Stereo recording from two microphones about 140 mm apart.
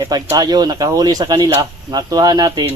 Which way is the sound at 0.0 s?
25° right (ahead or behind).